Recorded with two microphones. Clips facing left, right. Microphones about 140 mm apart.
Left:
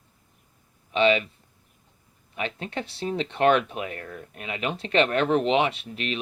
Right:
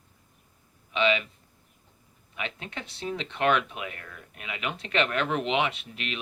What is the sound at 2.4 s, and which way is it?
Speech, 35° left (ahead or behind).